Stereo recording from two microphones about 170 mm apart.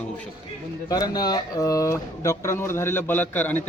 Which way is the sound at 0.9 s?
25° left (ahead or behind).